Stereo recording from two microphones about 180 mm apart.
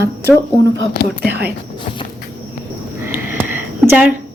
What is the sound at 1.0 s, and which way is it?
Speech, 70° left (ahead or behind).